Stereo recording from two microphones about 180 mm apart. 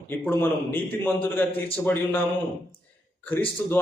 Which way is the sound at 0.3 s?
10° left (ahead or behind).